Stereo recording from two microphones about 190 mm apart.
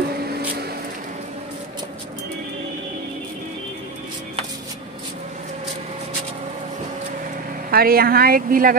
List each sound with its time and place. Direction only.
7.7 s speech: 50° right (ahead or behind)